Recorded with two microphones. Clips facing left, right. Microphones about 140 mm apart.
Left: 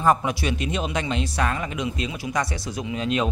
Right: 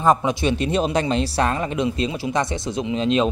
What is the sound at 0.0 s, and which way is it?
Speech, 20° right (ahead or behind).